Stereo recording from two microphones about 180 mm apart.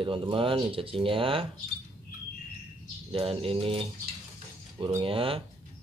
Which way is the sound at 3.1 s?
30° right (ahead or behind).